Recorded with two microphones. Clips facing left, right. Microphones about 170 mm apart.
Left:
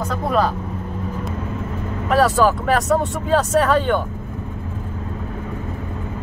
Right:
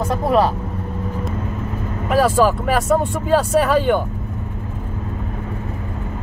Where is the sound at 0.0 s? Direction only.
25° right (ahead or behind).